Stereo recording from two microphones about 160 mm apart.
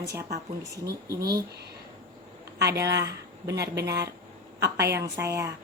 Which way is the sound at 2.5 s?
90° right.